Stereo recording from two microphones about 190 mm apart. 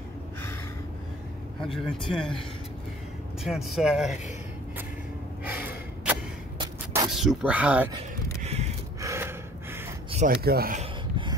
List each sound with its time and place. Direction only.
1.6 s speech: centre (ahead or behind)
3.4 s speech: centre (ahead or behind)
5.4 s gasp: 10° right (ahead or behind)
7.1 s speech: 5° right (ahead or behind)
8.4 s a sound: 35° right (ahead or behind)
9.0 s gasp: 15° right (ahead or behind)
10.1 s speech: 45° right (ahead or behind)
10.8 s a sound: 25° right (ahead or behind)